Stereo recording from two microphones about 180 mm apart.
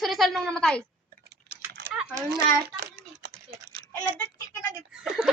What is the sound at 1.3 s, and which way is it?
Keys jangling, 65° right (ahead or behind).